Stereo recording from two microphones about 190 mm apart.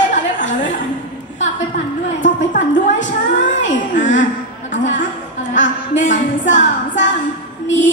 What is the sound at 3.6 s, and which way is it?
Speech, 80° left.